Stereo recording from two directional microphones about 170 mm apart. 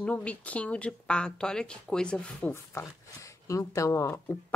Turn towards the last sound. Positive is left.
turn(degrees=15)  # may be behind; listen again after turning